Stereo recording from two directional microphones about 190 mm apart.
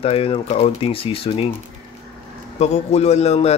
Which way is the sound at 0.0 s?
30° left (ahead or behind).